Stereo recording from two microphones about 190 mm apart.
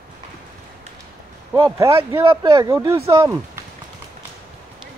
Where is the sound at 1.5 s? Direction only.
20° right (ahead or behind).